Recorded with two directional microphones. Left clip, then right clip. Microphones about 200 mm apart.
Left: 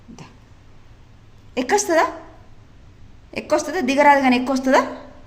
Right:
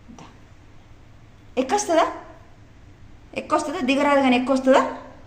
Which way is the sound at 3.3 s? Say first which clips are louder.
Left 2 dB; 45° left (ahead or behind).